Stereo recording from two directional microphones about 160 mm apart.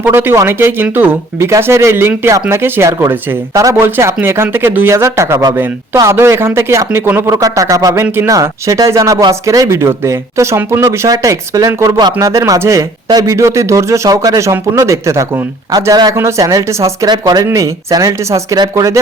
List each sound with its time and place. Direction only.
0.0 s speech: 15° right (ahead or behind)